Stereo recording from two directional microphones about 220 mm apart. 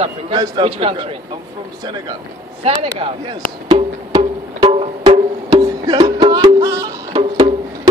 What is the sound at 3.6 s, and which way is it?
Music, 20° right (ahead or behind).